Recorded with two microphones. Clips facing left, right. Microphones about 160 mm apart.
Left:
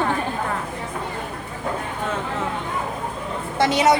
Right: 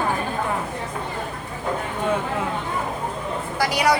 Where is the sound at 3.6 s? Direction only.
25° left (ahead or behind).